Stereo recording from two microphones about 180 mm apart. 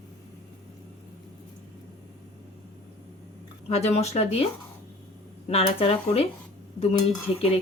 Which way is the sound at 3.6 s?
35° left (ahead or behind).